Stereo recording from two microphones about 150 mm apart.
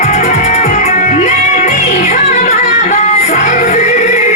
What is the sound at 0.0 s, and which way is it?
Music, 50° left (ahead or behind).